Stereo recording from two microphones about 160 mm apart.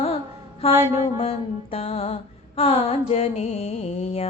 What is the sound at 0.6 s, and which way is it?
Mantra, 35° left (ahead or behind).